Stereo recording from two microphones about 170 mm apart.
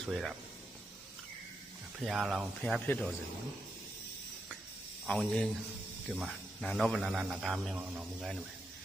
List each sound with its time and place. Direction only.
0.0 s a man's voice: centre (ahead or behind)
2.0 s a man's voice: centre (ahead or behind)
5.0 s a man's voice: 5° left (ahead or behind)